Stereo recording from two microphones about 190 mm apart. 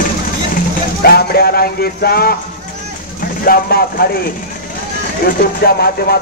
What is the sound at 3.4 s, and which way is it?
Speech, 50° left (ahead or behind).